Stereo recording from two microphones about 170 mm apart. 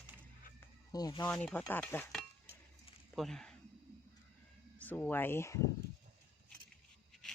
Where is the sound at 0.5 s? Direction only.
20° left (ahead or behind).